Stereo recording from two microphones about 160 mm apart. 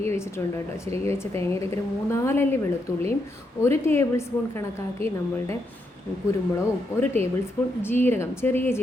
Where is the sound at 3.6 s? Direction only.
15° left (ahead or behind).